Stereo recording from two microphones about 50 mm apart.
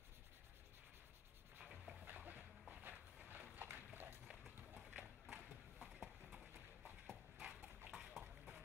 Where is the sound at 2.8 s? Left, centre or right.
Right.